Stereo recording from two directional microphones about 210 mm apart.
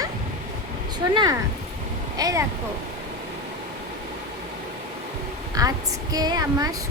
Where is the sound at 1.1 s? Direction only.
20° right (ahead or behind).